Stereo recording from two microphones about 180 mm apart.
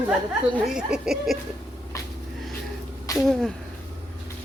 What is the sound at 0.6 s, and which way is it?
Speech, 5° right (ahead or behind).